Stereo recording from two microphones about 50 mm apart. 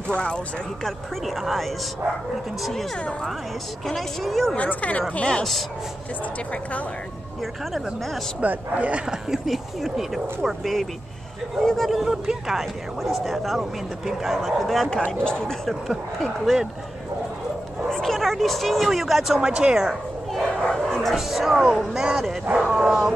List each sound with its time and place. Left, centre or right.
0.1 s speech: centre
0.8 s speech: centre
4.6 s speech: left
8.4 s speech: right
9.3 s speech: centre
12.1 s speech: centre
15.1 s speech: centre
15.6 s speech: centre
17.8 s speech: centre
20.6 s speech: centre